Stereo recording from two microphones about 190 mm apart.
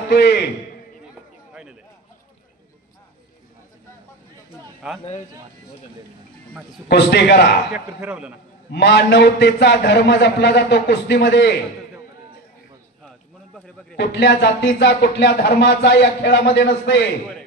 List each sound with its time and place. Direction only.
0.1 s a man's voice: 60° left (ahead or behind)
1.5 s a sound: 5° right (ahead or behind)
4.5 s a sound: centre (ahead or behind)
6.9 s speech: 60° left (ahead or behind)
7.7 s speech: 5° right (ahead or behind)
8.7 s speech: 65° left (ahead or behind)
13.9 s speech: 65° left (ahead or behind)